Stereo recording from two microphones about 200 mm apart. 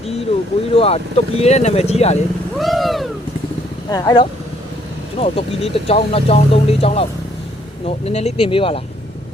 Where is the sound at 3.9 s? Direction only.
20° left (ahead or behind).